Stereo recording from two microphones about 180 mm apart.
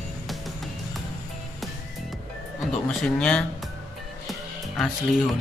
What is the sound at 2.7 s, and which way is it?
Speech, 5° left (ahead or behind).